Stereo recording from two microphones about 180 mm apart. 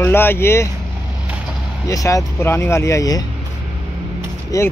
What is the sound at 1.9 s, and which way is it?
Speech, 20° left (ahead or behind).